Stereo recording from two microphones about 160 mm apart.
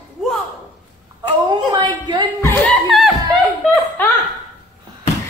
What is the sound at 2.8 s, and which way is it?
Vocal music, centre (ahead or behind).